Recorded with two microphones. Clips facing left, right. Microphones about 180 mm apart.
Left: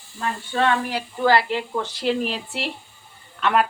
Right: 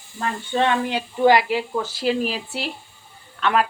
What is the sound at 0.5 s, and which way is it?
Speech, 20° right (ahead or behind).